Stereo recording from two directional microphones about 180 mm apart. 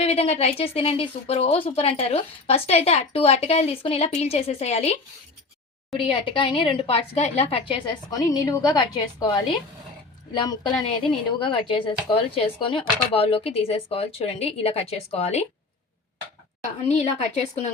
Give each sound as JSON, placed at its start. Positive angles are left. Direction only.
{"t": 0.0, "sound": "speech", "side_deg": 35}
{"t": 6.1, "sound": "a woman's voice", "side_deg": 30}
{"t": 16.9, "sound": "speech", "side_deg": 40}